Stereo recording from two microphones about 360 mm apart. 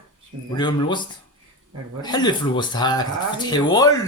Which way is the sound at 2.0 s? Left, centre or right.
Centre.